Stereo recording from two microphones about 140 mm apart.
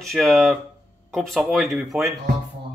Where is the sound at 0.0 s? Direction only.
Centre (ahead or behind).